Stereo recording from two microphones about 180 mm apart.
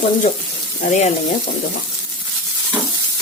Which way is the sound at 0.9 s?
40° left (ahead or behind).